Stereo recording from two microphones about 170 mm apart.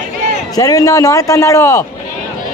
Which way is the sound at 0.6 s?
20° left (ahead or behind).